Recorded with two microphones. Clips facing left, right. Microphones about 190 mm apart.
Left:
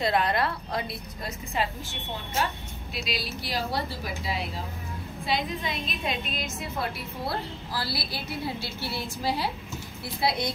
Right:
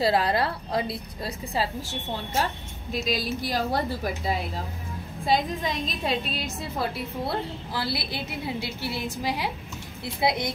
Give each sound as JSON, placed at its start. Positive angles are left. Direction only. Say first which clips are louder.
{"t": 0.0, "sound": "a woman's voice", "louder": "right 2 dB", "side_deg": -30}